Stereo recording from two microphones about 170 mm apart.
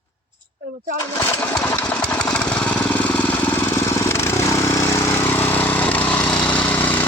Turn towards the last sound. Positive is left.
turn(degrees=10)  # may be behind; listen again after turning